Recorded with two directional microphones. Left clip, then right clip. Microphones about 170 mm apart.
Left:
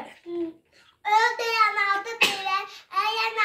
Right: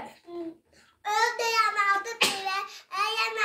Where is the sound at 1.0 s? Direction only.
20° right (ahead or behind).